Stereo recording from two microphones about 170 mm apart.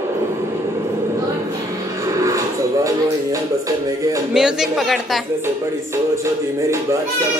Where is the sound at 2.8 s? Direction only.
20° right (ahead or behind).